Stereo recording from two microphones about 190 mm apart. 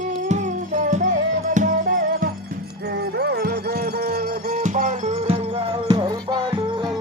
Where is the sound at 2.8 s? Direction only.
60° right (ahead or behind).